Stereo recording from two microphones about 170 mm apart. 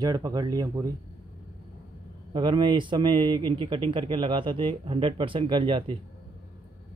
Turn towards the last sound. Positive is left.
turn(degrees=-30)  # may be behind; listen again after turning